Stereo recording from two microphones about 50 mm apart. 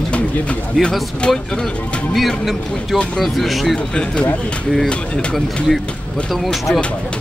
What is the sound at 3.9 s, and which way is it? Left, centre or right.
Speech, left.